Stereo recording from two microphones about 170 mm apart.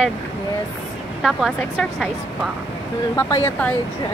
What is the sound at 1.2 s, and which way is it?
A woman's voice, centre (ahead or behind).